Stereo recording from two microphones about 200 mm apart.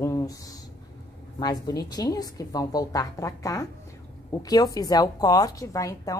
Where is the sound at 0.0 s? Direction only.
15° left (ahead or behind).